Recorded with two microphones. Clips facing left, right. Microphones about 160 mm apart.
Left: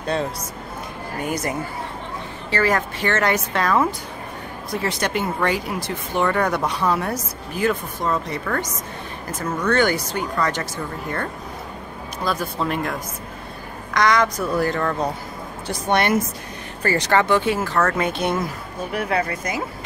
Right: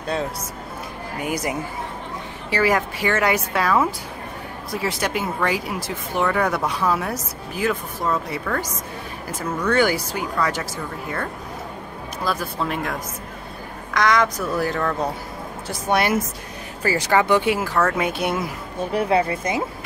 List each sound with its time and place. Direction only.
1.2 s speech: 10° right (ahead or behind)
12.3 s speech: centre (ahead or behind)
13.9 s speech: centre (ahead or behind)
18.9 s speech: 25° right (ahead or behind)